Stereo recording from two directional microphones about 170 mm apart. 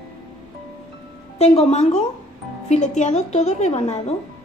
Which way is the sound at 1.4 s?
40° left (ahead or behind).